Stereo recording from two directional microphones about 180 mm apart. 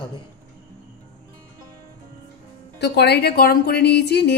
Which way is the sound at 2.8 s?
65° left (ahead or behind).